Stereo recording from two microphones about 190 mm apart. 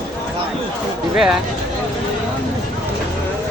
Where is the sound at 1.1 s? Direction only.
5° right (ahead or behind).